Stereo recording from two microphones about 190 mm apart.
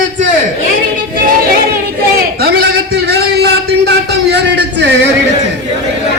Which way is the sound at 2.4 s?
55° right (ahead or behind).